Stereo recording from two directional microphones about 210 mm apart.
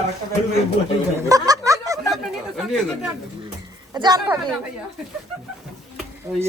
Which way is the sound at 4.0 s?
20° right (ahead or behind).